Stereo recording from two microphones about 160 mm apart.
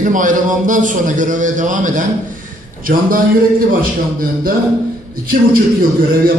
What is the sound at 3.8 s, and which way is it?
Speech, 65° right (ahead or behind).